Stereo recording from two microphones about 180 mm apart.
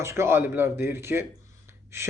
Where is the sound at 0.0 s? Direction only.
15° right (ahead or behind).